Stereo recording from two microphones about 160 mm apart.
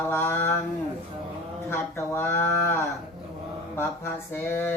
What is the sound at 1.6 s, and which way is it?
Mantra, 15° left (ahead or behind).